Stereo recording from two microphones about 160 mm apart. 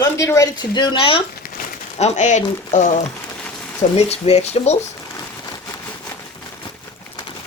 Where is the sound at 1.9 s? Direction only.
45° left (ahead or behind).